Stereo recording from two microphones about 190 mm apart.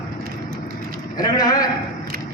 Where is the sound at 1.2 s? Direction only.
20° left (ahead or behind).